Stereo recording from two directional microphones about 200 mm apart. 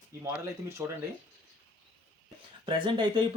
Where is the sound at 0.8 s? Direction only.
10° right (ahead or behind).